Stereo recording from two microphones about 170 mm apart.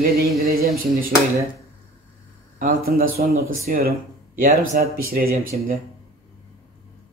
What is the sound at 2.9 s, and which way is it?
Speech, 60° right (ahead or behind).